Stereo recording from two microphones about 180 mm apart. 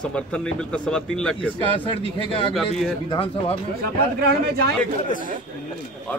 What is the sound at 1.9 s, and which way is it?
Speech, 30° left (ahead or behind).